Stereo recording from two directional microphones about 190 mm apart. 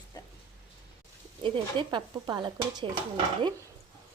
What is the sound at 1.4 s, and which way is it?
Speech, 25° right (ahead or behind).